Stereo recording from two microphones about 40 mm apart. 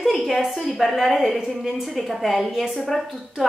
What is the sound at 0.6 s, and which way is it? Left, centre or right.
A woman's voice, centre.